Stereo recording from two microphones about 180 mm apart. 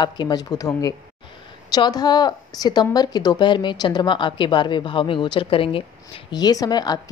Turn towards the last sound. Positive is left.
turn(degrees=20)  # may be behind; listen again after turning